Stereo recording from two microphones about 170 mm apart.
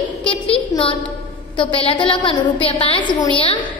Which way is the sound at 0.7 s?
20° left (ahead or behind).